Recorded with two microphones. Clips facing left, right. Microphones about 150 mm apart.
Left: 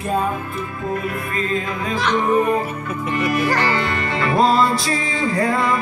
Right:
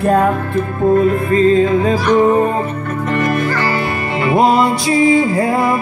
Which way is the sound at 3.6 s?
35° right (ahead or behind).